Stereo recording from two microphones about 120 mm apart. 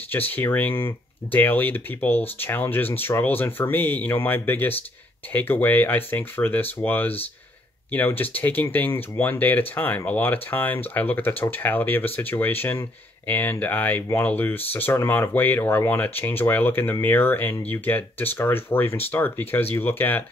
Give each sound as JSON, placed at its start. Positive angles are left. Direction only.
{"t": 0.1, "sound": "speech", "side_deg": 15}